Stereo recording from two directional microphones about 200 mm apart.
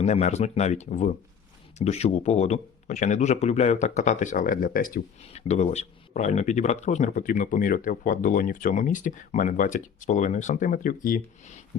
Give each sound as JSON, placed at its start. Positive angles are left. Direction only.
{"t": 0.0, "sound": "speech", "side_deg": 35}
{"t": 5.3, "sound": "speech", "side_deg": 35}